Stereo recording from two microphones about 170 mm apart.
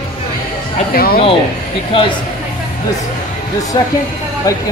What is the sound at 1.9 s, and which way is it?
Speech, 30° left (ahead or behind).